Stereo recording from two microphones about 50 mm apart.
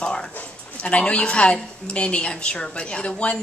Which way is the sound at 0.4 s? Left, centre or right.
Left.